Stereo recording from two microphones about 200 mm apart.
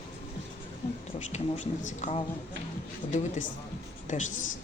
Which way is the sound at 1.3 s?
40° left (ahead or behind).